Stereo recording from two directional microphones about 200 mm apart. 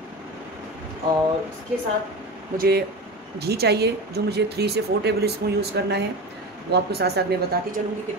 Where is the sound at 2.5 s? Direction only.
50° right (ahead or behind).